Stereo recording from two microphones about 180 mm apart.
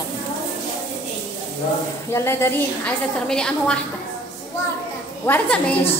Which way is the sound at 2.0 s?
15° left (ahead or behind).